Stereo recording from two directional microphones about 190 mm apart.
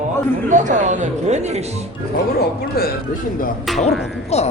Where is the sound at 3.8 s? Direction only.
35° left (ahead or behind).